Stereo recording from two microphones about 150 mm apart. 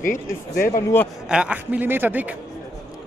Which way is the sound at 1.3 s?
5° right (ahead or behind).